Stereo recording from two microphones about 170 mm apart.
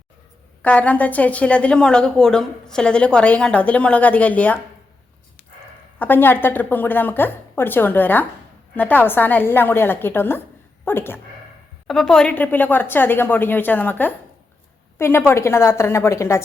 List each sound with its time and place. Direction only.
0.6 s a woman's voice: 10° left (ahead or behind)
6.0 s a woman's voice: 10° left (ahead or behind)